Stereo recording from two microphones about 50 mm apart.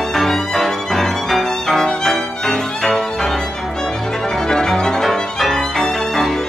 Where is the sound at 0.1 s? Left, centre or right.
Centre.